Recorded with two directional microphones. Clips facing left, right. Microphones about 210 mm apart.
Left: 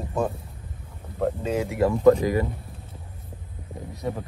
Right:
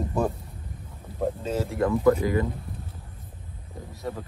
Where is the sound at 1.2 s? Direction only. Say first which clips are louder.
Left 2 dB; 10° left (ahead or behind).